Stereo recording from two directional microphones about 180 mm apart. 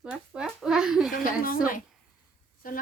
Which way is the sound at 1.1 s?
50° left (ahead or behind).